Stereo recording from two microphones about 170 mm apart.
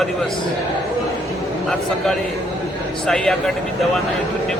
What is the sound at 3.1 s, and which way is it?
Speech, 5° left (ahead or behind).